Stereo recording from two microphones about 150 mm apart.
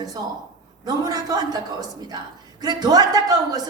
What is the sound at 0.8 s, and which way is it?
A woman's voice, 25° right (ahead or behind).